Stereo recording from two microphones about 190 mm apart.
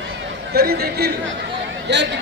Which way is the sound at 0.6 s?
55° right (ahead or behind).